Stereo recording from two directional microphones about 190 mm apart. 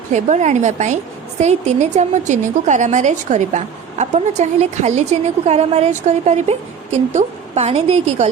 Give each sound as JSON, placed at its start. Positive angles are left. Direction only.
{"t": 0.1, "sound": "a woman's voice", "side_deg": -40}